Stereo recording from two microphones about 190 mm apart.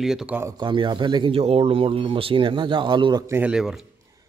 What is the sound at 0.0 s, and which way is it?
Speech, centre (ahead or behind).